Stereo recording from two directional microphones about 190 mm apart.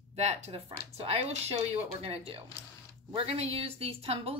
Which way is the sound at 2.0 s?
30° right (ahead or behind).